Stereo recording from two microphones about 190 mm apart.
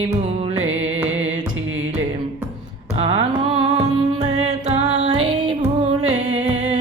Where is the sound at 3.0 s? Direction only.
30° right (ahead or behind).